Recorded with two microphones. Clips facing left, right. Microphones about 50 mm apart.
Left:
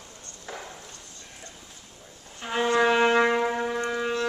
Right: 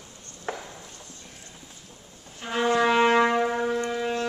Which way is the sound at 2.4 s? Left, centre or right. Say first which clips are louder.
Even; centre.